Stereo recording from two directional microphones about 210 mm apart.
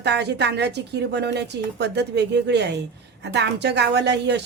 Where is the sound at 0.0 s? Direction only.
55° right (ahead or behind).